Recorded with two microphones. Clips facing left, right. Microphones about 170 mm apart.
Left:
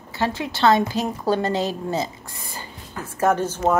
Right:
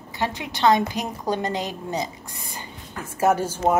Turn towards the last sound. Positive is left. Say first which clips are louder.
# even
turn(degrees=-10)  # may be behind; listen again after turning